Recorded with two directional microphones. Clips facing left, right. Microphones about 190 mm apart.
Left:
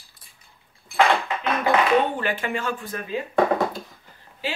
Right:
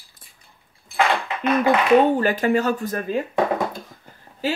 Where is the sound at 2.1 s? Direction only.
40° right (ahead or behind).